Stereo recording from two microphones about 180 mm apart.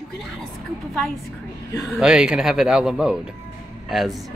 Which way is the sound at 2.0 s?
5° right (ahead or behind).